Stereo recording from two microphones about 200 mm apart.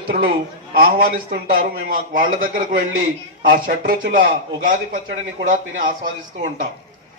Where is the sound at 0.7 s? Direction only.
50° right (ahead or behind).